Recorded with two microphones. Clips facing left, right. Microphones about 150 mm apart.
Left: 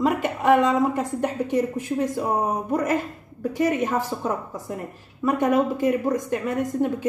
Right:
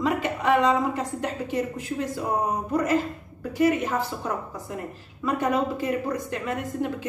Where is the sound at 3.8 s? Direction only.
50° left (ahead or behind).